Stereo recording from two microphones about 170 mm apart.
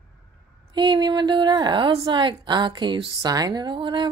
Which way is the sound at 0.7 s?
25° right (ahead or behind).